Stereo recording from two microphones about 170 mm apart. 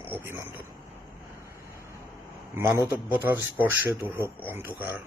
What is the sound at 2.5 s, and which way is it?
Speech, 15° right (ahead or behind).